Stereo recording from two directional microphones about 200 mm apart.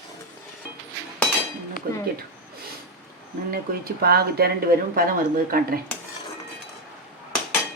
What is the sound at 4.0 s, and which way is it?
Speech, 50° right (ahead or behind).